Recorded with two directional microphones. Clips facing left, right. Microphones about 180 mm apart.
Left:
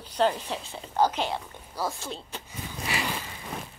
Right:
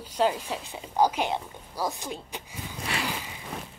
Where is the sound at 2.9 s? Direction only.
5° left (ahead or behind).